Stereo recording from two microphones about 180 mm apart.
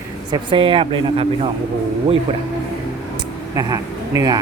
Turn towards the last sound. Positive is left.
turn(degrees=-20)  # may be behind; listen again after turning